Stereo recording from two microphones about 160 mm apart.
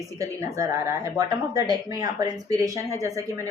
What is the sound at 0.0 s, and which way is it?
A woman's voice, 20° right (ahead or behind).